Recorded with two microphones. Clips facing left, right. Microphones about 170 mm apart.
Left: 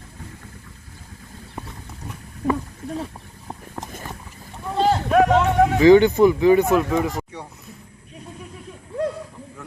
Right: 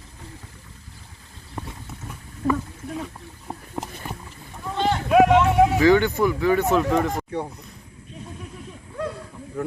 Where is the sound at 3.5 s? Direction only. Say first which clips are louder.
Right 1 dB; 5° right (ahead or behind).